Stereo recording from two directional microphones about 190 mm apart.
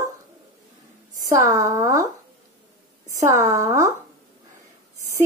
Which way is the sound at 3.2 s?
15° right (ahead or behind).